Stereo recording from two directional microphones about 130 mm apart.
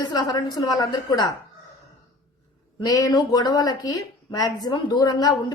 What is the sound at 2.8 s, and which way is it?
A woman's voice, 30° left (ahead or behind).